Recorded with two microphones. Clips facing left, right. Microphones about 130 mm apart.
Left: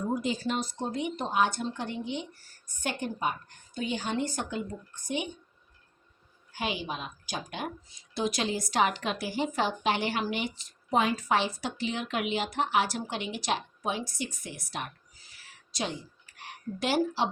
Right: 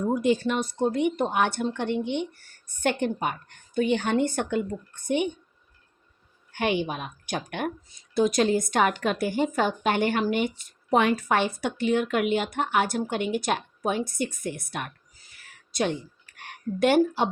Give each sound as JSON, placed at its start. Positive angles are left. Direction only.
{"t": 0.1, "sound": "speech", "side_deg": -60}
{"t": 6.5, "sound": "speech", "side_deg": -65}
{"t": 8.1, "sound": "a woman's voice", "side_deg": -50}
{"t": 15.4, "sound": "a sound", "side_deg": -55}